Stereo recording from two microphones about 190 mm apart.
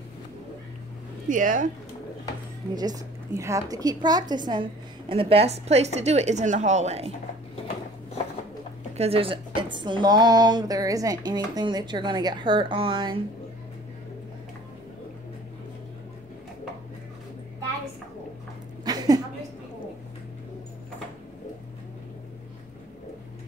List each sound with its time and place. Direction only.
1.3 s speech: 45° right (ahead or behind)
2.7 s a woman's voice: 20° right (ahead or behind); by 7.1 s 35° right (ahead or behind)
8.9 s speech: 30° right (ahead or behind)
18.9 s a sound: 20° right (ahead or behind)